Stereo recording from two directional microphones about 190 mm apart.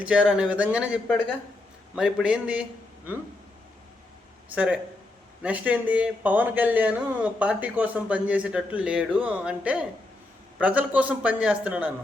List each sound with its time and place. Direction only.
0.0 s speech: 5° right (ahead or behind)
1.0 s speech: 10° left (ahead or behind)
2.0 s speech: 5° right (ahead or behind)
4.5 s speech: 5° right (ahead or behind)